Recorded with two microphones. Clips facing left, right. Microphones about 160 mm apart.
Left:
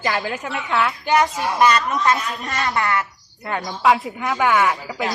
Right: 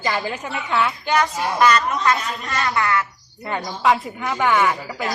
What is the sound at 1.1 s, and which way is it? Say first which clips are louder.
A man's voice: left 2 dB; 25° left (ahead or behind).